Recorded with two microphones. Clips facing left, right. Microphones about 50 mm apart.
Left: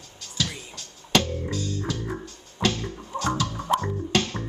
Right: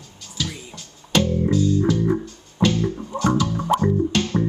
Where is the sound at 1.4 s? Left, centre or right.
Centre.